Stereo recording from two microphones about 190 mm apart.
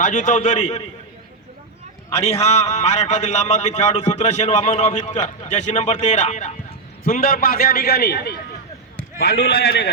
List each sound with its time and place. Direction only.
0.0 s a man's voice: 40° left (ahead or behind)
2.0 s a man's voice: 35° left (ahead or behind)
7.0 s a man's voice: 50° left (ahead or behind)